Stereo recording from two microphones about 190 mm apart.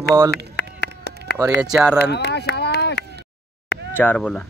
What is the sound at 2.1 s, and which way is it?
Speech, 60° left (ahead or behind).